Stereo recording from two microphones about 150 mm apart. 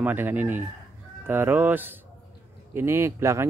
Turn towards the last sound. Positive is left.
turn(degrees=-20)  # may be behind; listen again after turning